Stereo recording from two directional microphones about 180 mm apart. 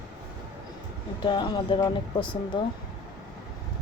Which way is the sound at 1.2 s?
25° left (ahead or behind).